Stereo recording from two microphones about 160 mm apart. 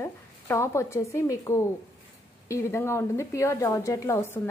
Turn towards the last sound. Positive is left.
turn(degrees=20)  # may be behind; listen again after turning